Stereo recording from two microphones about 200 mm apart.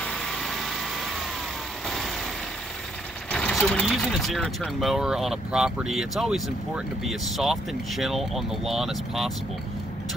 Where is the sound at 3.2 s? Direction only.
5° left (ahead or behind).